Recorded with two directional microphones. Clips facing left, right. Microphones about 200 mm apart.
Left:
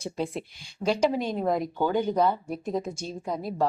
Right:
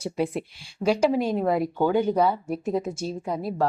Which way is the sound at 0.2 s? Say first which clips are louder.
Right 5 dB; 10° right (ahead or behind).